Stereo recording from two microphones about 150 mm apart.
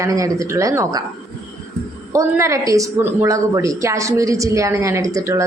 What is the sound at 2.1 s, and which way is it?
A woman's voice, 20° right (ahead or behind).